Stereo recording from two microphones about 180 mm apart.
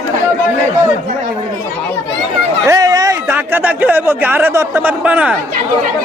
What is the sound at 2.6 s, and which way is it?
Speech, 20° right (ahead or behind).